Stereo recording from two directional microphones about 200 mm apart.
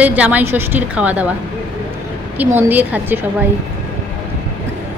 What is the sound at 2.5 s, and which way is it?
Speech, 10° right (ahead or behind).